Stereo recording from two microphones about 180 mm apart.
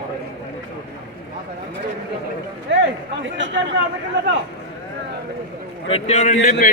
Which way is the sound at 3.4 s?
90° right.